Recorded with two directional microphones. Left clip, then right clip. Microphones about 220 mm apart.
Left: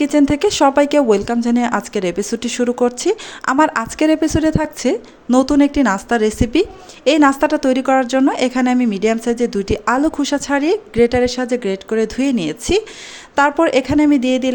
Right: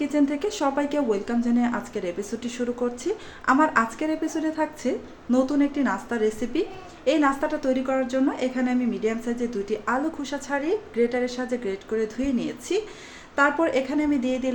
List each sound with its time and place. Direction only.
0.0 s speech: 45° left (ahead or behind)